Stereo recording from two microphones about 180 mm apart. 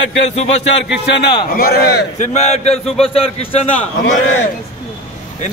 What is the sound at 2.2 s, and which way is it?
A man's voice, 40° left (ahead or behind).